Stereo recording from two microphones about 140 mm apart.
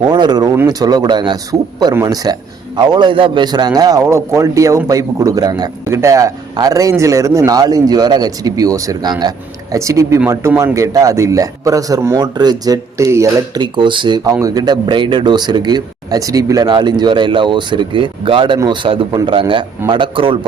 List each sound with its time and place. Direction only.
0.0 s a man's voice: 30° right (ahead or behind)
13.6 s speech: 35° right (ahead or behind)